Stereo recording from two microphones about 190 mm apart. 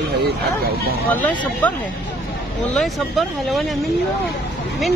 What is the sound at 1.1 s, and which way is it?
Speech, 10° left (ahead or behind).